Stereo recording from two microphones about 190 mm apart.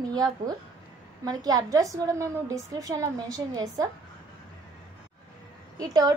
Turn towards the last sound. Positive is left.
turn(degrees=-20)  # may be behind; listen again after turning